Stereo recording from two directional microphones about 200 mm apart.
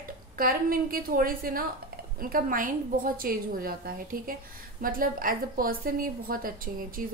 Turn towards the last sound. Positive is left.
turn(degrees=-45)  # may be behind; listen again after turning